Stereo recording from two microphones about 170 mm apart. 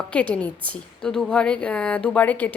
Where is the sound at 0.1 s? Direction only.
5° left (ahead or behind).